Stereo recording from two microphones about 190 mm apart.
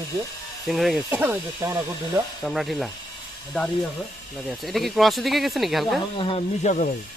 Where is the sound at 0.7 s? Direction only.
Centre (ahead or behind); by 2.2 s 15° right (ahead or behind).